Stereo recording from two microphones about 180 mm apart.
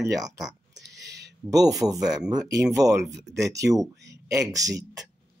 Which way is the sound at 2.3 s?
20° right (ahead or behind).